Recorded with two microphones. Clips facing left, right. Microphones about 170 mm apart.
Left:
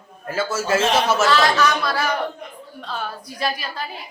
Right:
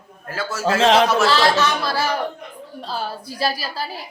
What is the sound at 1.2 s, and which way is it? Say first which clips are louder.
A woman's voice: even; 30° right (ahead or behind).